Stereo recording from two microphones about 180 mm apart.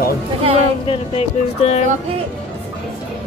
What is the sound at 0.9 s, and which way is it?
Speech, 35° left (ahead or behind).